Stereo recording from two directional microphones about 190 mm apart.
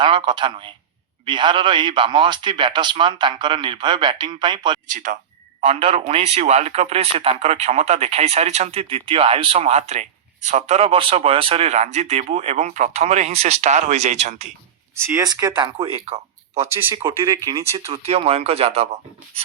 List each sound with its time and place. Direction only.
0.0 s a man's voice: 25° right (ahead or behind)
4.9 s speech: 40° right (ahead or behind)
5.5 s speech: 30° right (ahead or behind)
14.9 s a man's voice: 15° right (ahead or behind)
16.0 s a sound: 35° right (ahead or behind)
16.6 s speech: 15° right (ahead or behind)
17.7 s speech: 30° right (ahead or behind)